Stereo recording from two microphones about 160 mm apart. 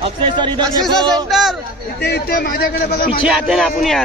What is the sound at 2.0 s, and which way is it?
A man's voice, 90° left.